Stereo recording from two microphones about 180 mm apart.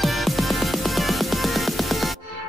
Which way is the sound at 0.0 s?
Centre (ahead or behind).